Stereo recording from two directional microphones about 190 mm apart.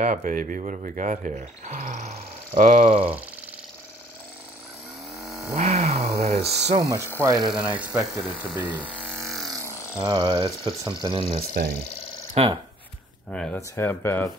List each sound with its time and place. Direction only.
0.0 s speech: 45° right (ahead or behind)
5.2 s a sound: centre (ahead or behind)
5.5 s a sound: 35° right (ahead or behind)
7.2 s speech: 15° right (ahead or behind)
7.5 s speech: 5° right (ahead or behind)
8.8 s electric shaver: 5° left (ahead or behind)
9.2 s vehicle: centre (ahead or behind)
9.9 s speech: 25° right (ahead or behind)
13.3 s speech: 5° left (ahead or behind)